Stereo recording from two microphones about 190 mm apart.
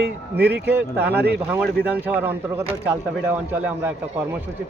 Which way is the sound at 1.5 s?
5° right (ahead or behind).